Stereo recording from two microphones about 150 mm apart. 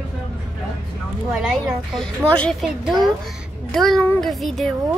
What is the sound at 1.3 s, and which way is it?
Speech, centre (ahead or behind).